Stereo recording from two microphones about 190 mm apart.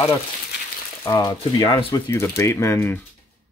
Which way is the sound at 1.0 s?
20° left (ahead or behind).